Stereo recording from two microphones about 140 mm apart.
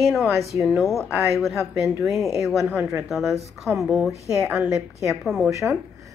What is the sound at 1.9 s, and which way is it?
A woman's voice, 20° right (ahead or behind).